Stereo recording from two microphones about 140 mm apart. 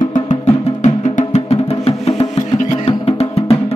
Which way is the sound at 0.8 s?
55° left (ahead or behind).